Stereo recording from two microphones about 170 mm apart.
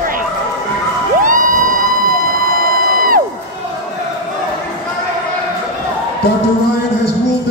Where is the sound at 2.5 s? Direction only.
55° right (ahead or behind).